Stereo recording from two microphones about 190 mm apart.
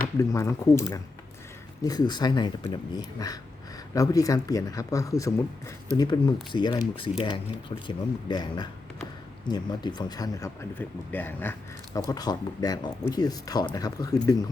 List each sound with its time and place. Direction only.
0.2 s a man's voice: 15° left (ahead or behind)